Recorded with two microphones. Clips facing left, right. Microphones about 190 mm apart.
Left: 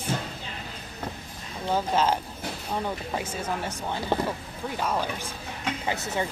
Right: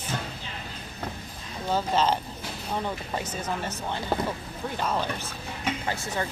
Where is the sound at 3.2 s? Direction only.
10° left (ahead or behind).